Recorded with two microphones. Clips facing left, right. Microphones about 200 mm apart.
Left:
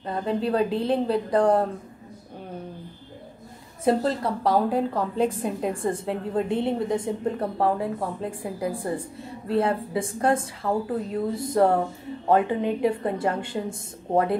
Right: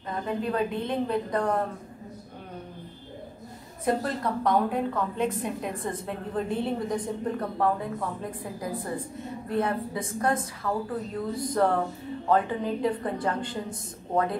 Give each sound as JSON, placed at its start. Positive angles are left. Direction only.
{"t": 0.1, "sound": "a woman's voice", "side_deg": 30}
{"t": 3.8, "sound": "a woman's voice", "side_deg": 30}